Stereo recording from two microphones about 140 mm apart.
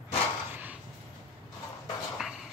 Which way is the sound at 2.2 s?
Centre (ahead or behind).